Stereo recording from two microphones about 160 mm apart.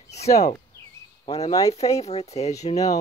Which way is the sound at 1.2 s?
40° left (ahead or behind).